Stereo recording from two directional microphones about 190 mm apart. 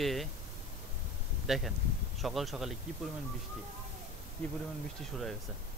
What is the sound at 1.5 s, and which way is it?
Speech, centre (ahead or behind).